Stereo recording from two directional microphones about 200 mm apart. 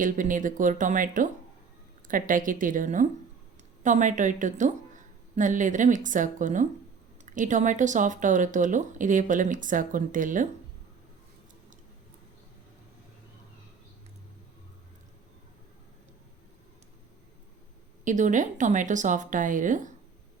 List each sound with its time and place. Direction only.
0.0 s a woman's voice: 40° right (ahead or behind)
18.0 s speech: 40° right (ahead or behind)